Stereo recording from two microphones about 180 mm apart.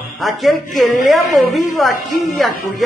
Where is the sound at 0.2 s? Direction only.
Centre (ahead or behind).